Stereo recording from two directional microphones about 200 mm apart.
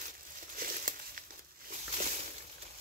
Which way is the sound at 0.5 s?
45° right (ahead or behind).